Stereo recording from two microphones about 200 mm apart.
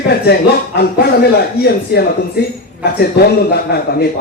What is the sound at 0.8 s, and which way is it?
A man's voice, 55° left (ahead or behind).